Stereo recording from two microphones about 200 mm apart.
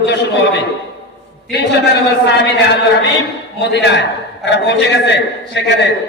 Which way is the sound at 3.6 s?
60° left (ahead or behind).